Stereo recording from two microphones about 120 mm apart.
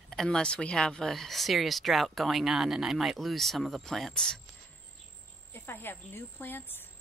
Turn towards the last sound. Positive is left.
turn(degrees=15)  # may be behind; listen again after turning